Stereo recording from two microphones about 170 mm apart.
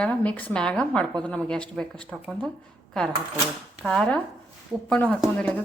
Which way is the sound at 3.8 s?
5° left (ahead or behind).